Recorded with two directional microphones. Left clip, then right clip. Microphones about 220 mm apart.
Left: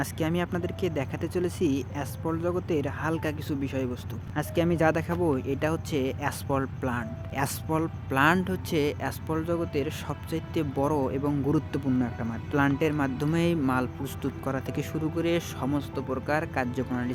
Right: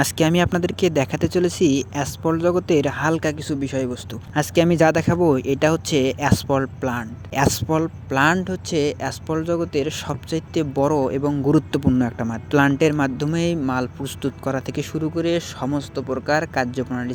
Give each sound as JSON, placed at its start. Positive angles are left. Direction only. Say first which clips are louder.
{"t": 0.0, "sound": "speech", "louder": "right 11 dB", "side_deg": -35}
{"t": 13.2, "sound": "speech", "louder": "right 4 dB", "side_deg": -15}